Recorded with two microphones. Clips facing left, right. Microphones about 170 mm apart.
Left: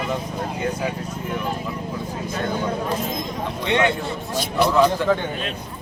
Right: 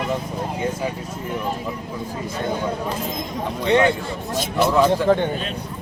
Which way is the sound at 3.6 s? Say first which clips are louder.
Right 4 dB; 35° right (ahead or behind).